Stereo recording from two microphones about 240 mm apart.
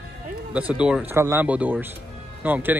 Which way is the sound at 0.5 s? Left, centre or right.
Centre.